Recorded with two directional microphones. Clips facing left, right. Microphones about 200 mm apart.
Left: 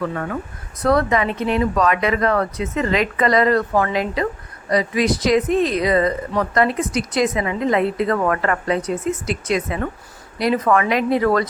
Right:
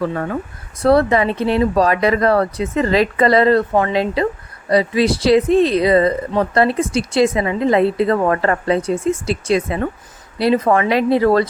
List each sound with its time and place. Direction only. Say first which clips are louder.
0.0 s speech: right 3 dB; 30° right (ahead or behind)